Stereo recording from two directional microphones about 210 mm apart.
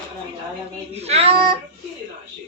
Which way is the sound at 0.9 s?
30° right (ahead or behind).